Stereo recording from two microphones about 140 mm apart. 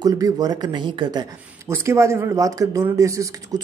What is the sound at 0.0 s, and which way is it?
Speech, 25° right (ahead or behind).